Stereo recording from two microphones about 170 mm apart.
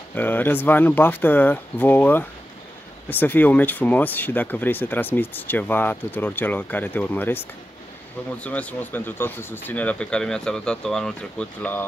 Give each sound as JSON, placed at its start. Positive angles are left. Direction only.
{"t": 0.1, "sound": "speech", "side_deg": 10}
{"t": 8.5, "sound": "speech", "side_deg": 10}